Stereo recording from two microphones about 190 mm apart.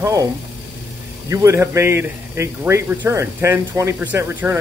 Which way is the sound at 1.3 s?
15° right (ahead or behind).